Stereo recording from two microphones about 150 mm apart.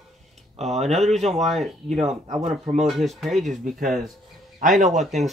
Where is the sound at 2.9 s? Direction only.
Centre (ahead or behind).